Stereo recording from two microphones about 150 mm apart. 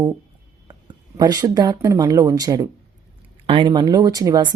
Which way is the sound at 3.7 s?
25° right (ahead or behind).